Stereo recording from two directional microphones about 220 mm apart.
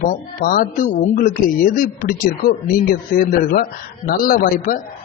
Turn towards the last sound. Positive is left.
turn(degrees=40)  # may be behind; listen again after turning